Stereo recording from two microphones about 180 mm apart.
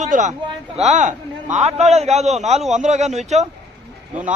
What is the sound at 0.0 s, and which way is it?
A man's voice, 45° right (ahead or behind).